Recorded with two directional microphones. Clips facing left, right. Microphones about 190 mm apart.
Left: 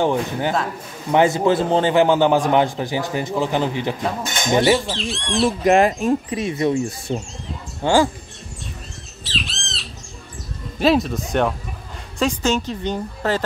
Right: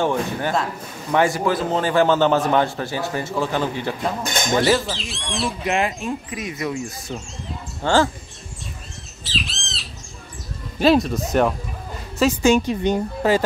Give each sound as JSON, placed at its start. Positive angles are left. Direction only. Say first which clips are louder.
{"t": 0.0, "sound": "a man's voice", "louder": "left 2 dB", "side_deg": 15}
{"t": 4.6, "sound": "speech", "louder": "left 2 dB", "side_deg": 0}
{"t": 5.6, "sound": "speech", "louder": "left 8 dB", "side_deg": 40}
{"t": 7.8, "sound": "a man's voice", "louder": "left 2 dB", "side_deg": 15}
{"t": 9.2, "sound": "squawk", "louder": "even", "side_deg": 0}
{"t": 10.8, "sound": "a woman's voice", "louder": "right 1 dB", "side_deg": 0}